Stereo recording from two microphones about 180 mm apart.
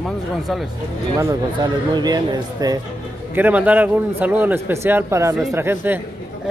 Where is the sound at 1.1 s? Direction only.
20° right (ahead or behind).